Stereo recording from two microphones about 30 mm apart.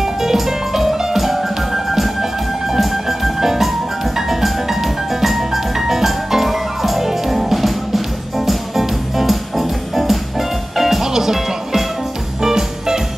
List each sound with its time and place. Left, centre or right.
0.0 s music: centre